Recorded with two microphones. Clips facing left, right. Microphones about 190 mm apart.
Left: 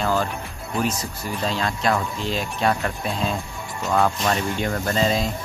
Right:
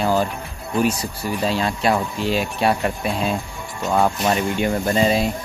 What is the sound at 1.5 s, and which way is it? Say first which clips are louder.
Speech: right 3 dB; 10° right (ahead or behind).